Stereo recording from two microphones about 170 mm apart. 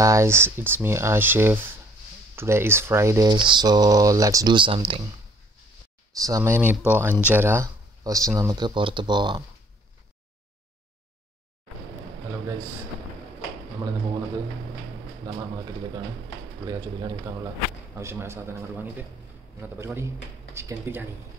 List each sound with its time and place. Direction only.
0.0 s speech: 15° right (ahead or behind)
6.2 s speech: 20° right (ahead or behind)
15.3 s speech: 20° right (ahead or behind)
16.6 s speech: 20° right (ahead or behind)